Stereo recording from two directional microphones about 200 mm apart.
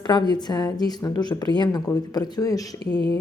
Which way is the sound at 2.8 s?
55° left (ahead or behind).